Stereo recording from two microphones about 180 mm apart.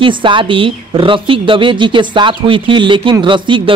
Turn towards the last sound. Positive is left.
turn(degrees=-25)  # may be behind; listen again after turning